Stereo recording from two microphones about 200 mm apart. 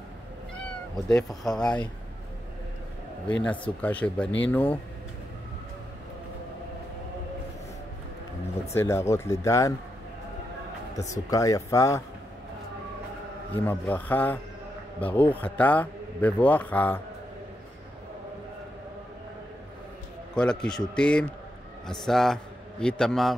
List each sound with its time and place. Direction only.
1.0 s a man's voice: 5° left (ahead or behind)
3.3 s a man's voice: 5° left (ahead or behind)
8.7 s a man's voice: 15° left (ahead or behind)
11.0 s a man's voice: 15° left (ahead or behind)
13.5 s a man's voice: 10° left (ahead or behind)
20.3 s a man's voice: 5° left (ahead or behind)